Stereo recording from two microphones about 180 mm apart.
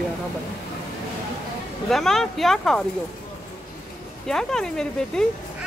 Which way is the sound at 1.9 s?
Centre (ahead or behind).